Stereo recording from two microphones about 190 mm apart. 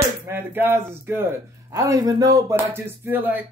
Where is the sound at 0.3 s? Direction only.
10° right (ahead or behind).